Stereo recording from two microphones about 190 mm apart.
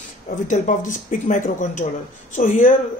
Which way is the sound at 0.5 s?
40° left (ahead or behind).